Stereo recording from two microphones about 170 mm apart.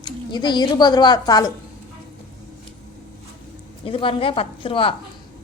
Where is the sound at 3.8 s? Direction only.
30° left (ahead or behind).